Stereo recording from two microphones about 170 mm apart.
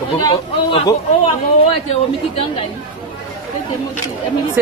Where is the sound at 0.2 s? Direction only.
25° left (ahead or behind).